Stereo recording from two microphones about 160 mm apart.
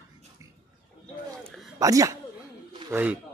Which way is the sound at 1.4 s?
Centre (ahead or behind).